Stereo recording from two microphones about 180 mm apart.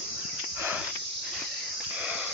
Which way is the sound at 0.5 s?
10° right (ahead or behind).